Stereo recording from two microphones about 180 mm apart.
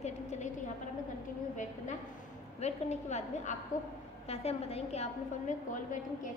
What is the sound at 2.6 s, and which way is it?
A woman's voice, 40° left (ahead or behind).